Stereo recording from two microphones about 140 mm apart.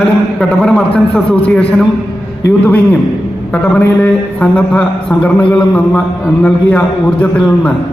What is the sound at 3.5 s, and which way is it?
A man's voice, 10° left (ahead or behind).